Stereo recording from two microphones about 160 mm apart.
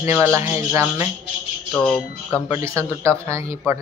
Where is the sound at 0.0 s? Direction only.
15° right (ahead or behind).